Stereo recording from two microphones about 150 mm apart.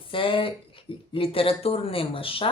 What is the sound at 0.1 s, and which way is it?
Speech, 35° left (ahead or behind).